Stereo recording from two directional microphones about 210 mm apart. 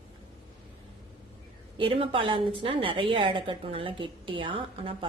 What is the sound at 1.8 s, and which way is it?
A woman's voice, 25° right (ahead or behind).